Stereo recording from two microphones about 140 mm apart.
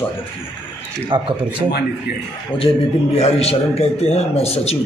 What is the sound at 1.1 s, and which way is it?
Speech, 35° right (ahead or behind).